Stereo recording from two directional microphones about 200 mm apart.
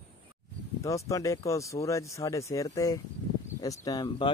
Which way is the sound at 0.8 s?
15° left (ahead or behind).